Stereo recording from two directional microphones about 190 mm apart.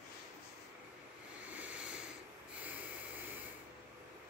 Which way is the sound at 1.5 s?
5° right (ahead or behind).